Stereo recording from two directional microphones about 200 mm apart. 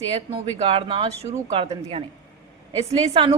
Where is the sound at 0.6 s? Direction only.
25° right (ahead or behind).